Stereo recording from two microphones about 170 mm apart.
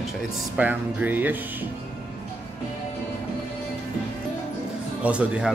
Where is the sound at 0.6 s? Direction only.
10° right (ahead or behind).